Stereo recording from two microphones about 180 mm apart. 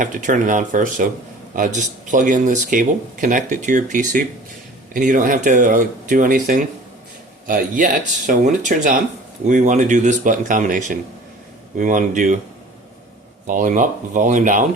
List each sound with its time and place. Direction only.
0.0 s speech: 45° right (ahead or behind)
13.5 s speech: 45° right (ahead or behind)